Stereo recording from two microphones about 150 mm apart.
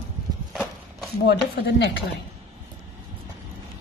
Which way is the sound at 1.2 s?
90° left.